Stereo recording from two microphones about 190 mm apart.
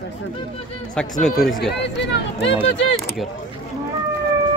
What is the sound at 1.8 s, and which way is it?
Speech, 65° left (ahead or behind).